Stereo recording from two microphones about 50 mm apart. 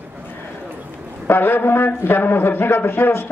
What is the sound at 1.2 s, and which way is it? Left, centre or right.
Speech, left.